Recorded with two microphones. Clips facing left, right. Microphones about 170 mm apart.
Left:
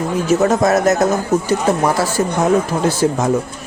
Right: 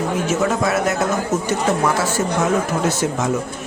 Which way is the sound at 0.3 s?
40° left (ahead or behind).